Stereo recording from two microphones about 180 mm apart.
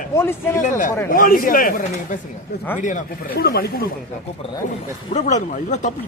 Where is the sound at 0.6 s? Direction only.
45° left (ahead or behind).